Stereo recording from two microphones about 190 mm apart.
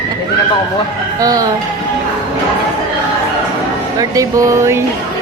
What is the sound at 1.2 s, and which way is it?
Speech, 20° right (ahead or behind).